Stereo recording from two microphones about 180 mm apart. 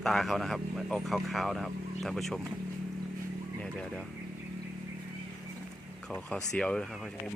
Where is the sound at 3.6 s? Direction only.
5° left (ahead or behind).